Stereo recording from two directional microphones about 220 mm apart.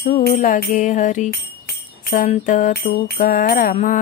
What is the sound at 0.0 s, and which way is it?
Music, 40° left (ahead or behind).